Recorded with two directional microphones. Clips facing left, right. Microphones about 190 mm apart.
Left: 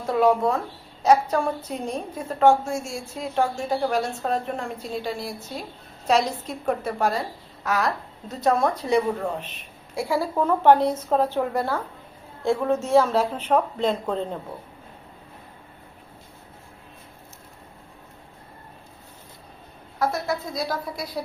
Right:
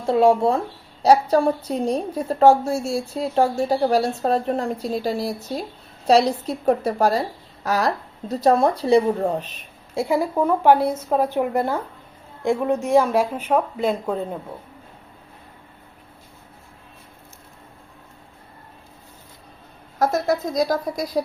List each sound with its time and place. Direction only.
0.0 s a woman's voice: 30° right (ahead or behind)
9.9 s speech: 20° right (ahead or behind)
20.0 s speech: 45° right (ahead or behind)